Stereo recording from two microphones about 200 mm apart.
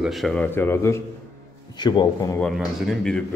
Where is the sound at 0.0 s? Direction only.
Centre (ahead or behind); by 2.4 s 20° left (ahead or behind).